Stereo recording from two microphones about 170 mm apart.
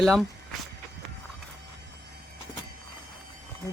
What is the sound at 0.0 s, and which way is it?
Speech, centre (ahead or behind).